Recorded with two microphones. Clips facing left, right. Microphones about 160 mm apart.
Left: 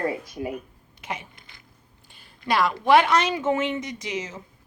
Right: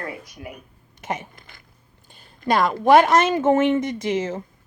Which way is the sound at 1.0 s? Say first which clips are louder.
Right 5 dB; 45° right (ahead or behind).